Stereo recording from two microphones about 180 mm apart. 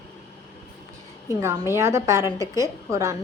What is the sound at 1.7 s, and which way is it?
A woman's voice, 15° right (ahead or behind).